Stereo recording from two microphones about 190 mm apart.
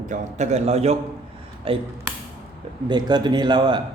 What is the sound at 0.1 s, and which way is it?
A man's voice, 35° right (ahead or behind).